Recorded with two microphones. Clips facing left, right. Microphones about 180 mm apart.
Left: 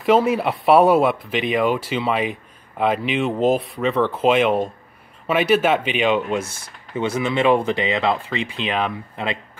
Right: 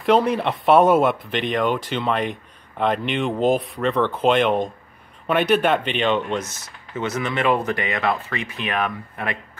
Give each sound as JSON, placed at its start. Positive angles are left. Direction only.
{"t": 0.0, "sound": "speech", "side_deg": 5}
{"t": 7.6, "sound": "speech", "side_deg": 25}